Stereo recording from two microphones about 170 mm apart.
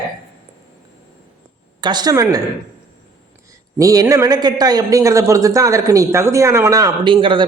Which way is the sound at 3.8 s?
20° right (ahead or behind).